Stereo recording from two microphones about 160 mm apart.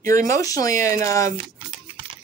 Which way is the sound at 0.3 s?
20° left (ahead or behind).